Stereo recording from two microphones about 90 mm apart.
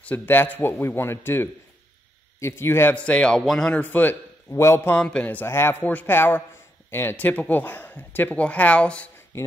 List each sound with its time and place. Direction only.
0.0 s speech: 20° left (ahead or behind)
3.0 s speech: 10° left (ahead or behind)
3.8 s a man's voice: 20° left (ahead or behind)
4.9 s speech: 10° left (ahead or behind)
5.4 s speech: 25° left (ahead or behind)